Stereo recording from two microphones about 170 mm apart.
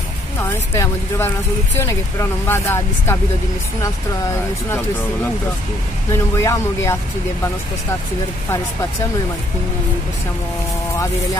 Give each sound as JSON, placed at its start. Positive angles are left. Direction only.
{"t": 0.4, "sound": "speech", "side_deg": 15}
{"t": 6.1, "sound": "speech", "side_deg": 20}